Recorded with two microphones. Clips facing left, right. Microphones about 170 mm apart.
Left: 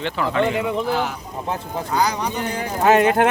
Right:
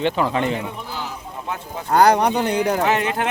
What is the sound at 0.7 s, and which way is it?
Speech, 85° left.